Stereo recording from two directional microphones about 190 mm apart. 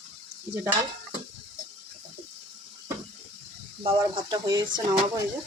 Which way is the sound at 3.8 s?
25° right (ahead or behind).